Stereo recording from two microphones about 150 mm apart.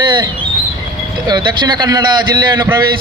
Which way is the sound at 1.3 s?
30° right (ahead or behind).